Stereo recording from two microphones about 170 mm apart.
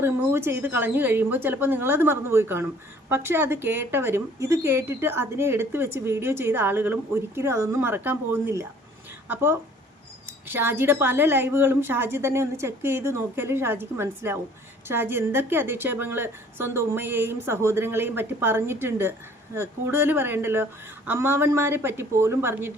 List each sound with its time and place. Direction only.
0.0 s speech: 15° right (ahead or behind)